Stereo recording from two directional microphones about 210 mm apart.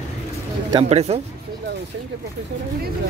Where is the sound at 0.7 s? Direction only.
30° right (ahead or behind).